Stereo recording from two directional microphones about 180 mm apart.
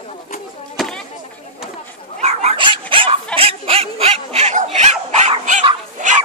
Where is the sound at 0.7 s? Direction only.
5° left (ahead or behind).